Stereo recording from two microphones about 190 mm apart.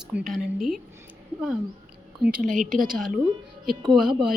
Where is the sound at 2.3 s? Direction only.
45° right (ahead or behind).